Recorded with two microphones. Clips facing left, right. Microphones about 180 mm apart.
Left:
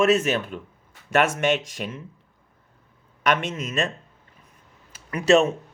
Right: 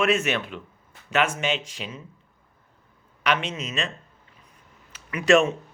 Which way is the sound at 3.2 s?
50° left (ahead or behind).